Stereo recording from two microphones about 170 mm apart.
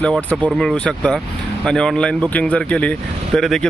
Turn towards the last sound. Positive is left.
turn(degrees=0)  # may be behind; listen again after turning